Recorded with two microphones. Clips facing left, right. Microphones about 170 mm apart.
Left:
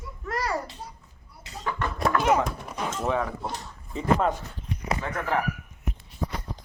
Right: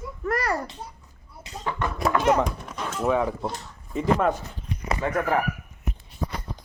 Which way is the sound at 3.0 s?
10° right (ahead or behind).